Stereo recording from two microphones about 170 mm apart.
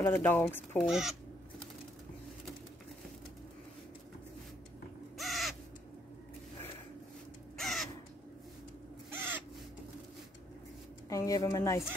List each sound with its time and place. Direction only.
0.0 s speech: 15° left (ahead or behind)
0.8 s speech: 5° right (ahead or behind)
5.1 s crow: centre (ahead or behind)
7.5 s crow: centre (ahead or behind)
9.1 s crow: 15° right (ahead or behind)
11.1 s a woman's voice: 20° left (ahead or behind)